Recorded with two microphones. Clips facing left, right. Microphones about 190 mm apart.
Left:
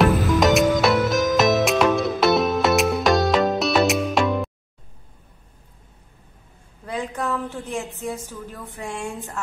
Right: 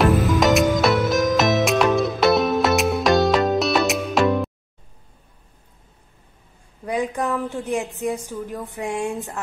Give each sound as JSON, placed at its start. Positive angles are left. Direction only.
{"t": 0.0, "sound": "music", "side_deg": 0}
{"t": 6.9, "sound": "a woman's voice", "side_deg": -15}